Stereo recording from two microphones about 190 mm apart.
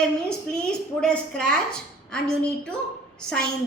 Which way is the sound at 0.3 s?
5° left (ahead or behind).